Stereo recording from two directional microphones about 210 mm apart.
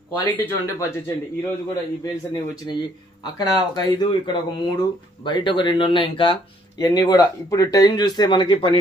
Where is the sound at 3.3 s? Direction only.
20° left (ahead or behind).